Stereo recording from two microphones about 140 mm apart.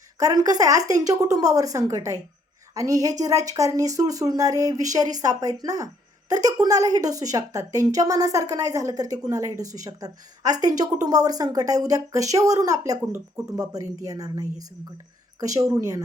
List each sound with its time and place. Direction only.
0.2 s speech: 25° right (ahead or behind)